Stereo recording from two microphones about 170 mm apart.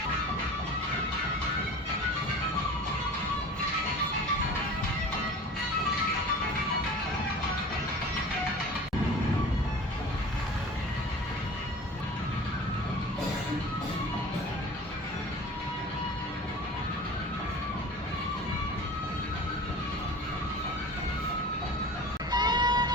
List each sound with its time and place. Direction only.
22.3 s music: 25° right (ahead or behind)